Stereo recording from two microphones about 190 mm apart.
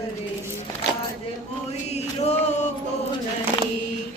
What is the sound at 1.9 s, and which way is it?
Chant, 35° left (ahead or behind).